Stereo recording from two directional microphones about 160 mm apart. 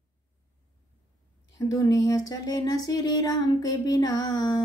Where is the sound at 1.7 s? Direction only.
20° left (ahead or behind).